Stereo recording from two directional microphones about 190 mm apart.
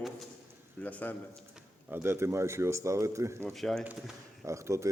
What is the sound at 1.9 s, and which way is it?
Speech, 10° right (ahead or behind).